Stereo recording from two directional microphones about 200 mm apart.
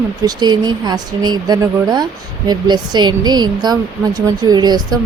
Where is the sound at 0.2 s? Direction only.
20° right (ahead or behind).